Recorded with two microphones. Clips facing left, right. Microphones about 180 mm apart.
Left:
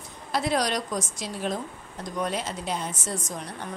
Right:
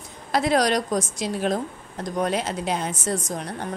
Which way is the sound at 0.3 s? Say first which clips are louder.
Right 5 dB; 90° right.